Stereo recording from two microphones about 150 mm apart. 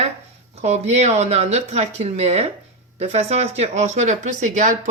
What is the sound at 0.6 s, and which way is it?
Speech, 45° right (ahead or behind).